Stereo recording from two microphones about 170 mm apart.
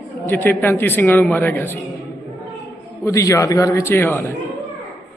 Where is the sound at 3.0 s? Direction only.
20° left (ahead or behind).